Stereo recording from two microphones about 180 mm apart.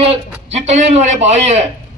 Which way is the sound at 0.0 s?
35° right (ahead or behind).